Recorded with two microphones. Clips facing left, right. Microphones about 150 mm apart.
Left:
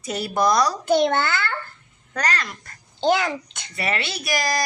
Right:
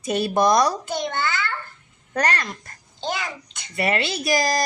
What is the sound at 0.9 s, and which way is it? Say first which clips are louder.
Speech: left 7 dB; 65° left (ahead or behind).